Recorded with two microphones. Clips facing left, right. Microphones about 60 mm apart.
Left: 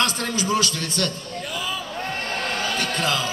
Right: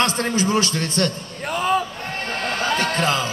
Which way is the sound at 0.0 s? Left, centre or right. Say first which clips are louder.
Right 4 dB; right.